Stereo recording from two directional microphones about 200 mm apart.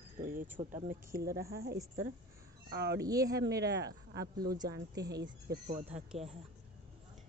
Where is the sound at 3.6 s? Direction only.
55° right (ahead or behind).